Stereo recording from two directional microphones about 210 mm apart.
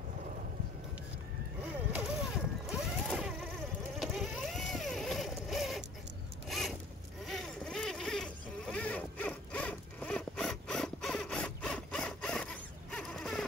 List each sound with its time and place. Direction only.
1.9 s vehicle: 5° right (ahead or behind)
6.5 s zipper: centre (ahead or behind)
7.2 s a sound: centre (ahead or behind)